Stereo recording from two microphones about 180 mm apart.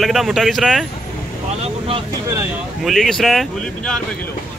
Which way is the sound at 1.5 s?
35° right (ahead or behind).